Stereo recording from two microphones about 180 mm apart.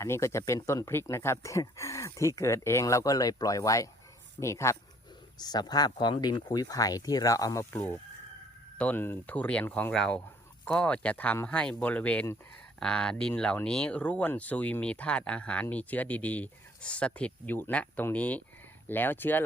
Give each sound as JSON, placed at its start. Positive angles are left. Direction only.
{"t": 0.0, "sound": "speech", "side_deg": 15}